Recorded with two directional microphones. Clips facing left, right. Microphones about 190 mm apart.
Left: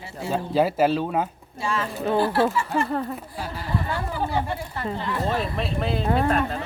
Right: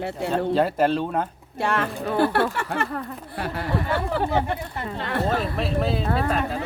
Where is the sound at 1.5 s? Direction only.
65° right (ahead or behind).